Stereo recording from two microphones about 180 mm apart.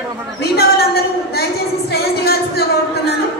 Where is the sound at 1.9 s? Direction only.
60° left (ahead or behind).